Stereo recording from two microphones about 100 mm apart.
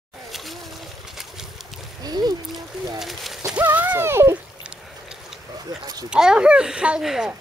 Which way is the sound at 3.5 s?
15° right (ahead or behind).